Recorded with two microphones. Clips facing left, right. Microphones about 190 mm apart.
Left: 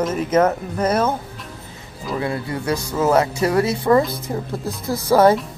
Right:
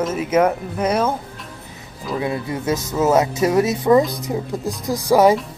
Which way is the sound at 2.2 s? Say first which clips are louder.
Right 1 dB; 20° right (ahead or behind).